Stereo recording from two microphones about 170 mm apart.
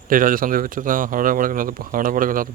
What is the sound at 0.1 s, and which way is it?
Speech, 55° right (ahead or behind).